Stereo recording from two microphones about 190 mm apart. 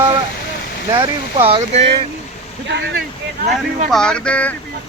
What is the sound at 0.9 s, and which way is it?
Speech, 30° right (ahead or behind).